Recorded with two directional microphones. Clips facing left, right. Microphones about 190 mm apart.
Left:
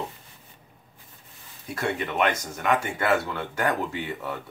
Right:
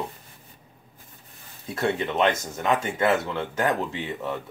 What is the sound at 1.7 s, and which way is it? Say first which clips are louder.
Speech: right 2 dB; 25° right (ahead or behind).